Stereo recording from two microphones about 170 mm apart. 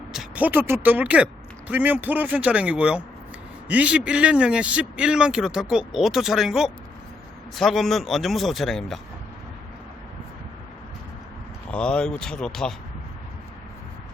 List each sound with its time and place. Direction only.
0.1 s a man's voice: 5° right (ahead or behind)
11.7 s a man's voice: 5° left (ahead or behind)